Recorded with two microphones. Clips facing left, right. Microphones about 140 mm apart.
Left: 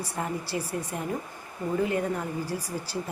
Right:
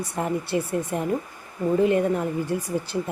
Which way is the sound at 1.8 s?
20° right (ahead or behind).